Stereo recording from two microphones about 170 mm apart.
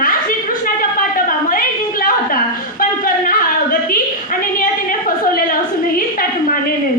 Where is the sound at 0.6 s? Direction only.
55° left (ahead or behind).